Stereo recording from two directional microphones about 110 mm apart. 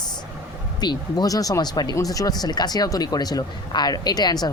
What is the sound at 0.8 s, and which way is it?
Speech, 40° left (ahead or behind).